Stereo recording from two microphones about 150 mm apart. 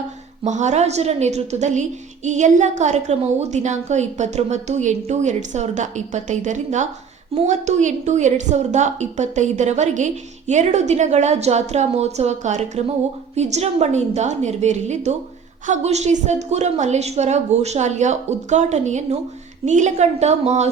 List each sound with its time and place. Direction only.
0.4 s a woman's voice: 50° right (ahead or behind)